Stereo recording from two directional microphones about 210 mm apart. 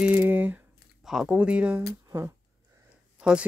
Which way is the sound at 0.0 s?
10° right (ahead or behind).